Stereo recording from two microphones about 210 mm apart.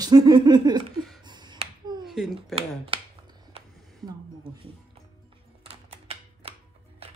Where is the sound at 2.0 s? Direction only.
Centre (ahead or behind).